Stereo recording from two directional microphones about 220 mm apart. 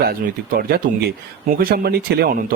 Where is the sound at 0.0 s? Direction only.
40° right (ahead or behind).